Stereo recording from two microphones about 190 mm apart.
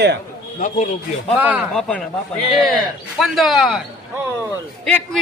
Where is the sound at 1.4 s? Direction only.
10° right (ahead or behind).